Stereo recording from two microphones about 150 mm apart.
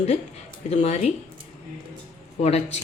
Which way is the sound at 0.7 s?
45° left (ahead or behind).